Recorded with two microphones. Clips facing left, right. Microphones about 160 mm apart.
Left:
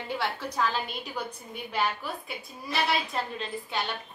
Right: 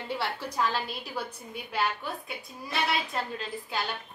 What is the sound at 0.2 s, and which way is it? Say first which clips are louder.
A woman's voice: left 1 dB; 5° right (ahead or behind).